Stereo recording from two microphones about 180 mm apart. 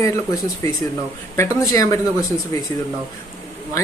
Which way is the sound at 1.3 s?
15° left (ahead or behind).